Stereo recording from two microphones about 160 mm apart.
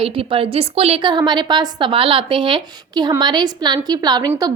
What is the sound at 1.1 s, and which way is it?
A woman's voice, 25° right (ahead or behind).